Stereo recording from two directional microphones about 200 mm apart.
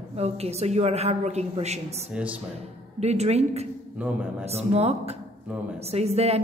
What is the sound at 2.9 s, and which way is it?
A woman's voice, 30° right (ahead or behind).